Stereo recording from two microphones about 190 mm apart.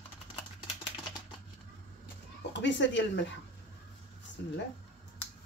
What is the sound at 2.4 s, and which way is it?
Speech, 65° left (ahead or behind).